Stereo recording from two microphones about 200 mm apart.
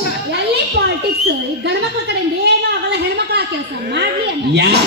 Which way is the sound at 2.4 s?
55° right (ahead or behind).